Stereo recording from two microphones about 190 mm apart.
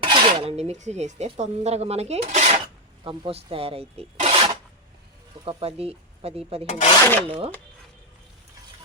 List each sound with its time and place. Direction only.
0.0 s speech: 25° right (ahead or behind)
6.7 s filing: 40° left (ahead or behind)
6.9 s filing: 15° left (ahead or behind)
7.3 s speech: 30° right (ahead or behind)